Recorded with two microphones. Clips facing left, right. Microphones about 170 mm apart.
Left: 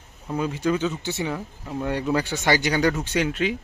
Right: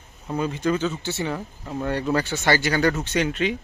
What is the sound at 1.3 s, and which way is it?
Speech, centre (ahead or behind).